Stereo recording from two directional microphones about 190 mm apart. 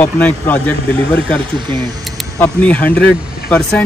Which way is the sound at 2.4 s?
10° left (ahead or behind).